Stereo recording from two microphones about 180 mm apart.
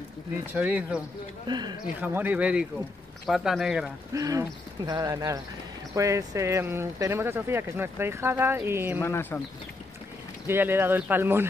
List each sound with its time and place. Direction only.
0.5 s speech: 10° right (ahead or behind)
1.5 s speech: 25° right (ahead or behind)
2.0 s speech: 10° right (ahead or behind)
4.1 s speech: 20° right (ahead or behind)
9.0 s speech: 10° left (ahead or behind)
10.4 s speech: 10° right (ahead or behind)